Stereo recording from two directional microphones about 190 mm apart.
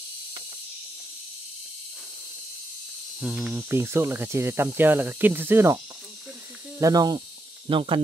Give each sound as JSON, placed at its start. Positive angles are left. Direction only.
{"t": 3.2, "sound": "snake", "side_deg": -5}
{"t": 6.8, "sound": "speech", "side_deg": -20}